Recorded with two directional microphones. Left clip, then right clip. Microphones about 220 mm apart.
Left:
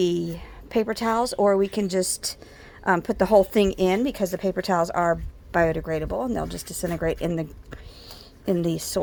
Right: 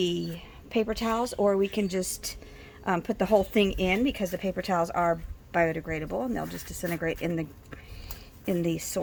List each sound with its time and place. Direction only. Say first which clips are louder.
0.3 s speech: left 4 dB; 25° left (ahead or behind)